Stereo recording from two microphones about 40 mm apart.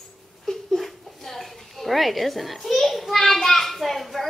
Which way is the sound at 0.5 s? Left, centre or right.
Centre.